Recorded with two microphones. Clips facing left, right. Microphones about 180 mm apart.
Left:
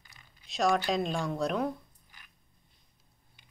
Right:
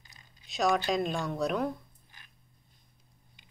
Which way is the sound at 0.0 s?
20° right (ahead or behind).